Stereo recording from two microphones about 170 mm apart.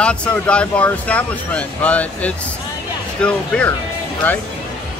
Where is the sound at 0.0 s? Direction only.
5° left (ahead or behind).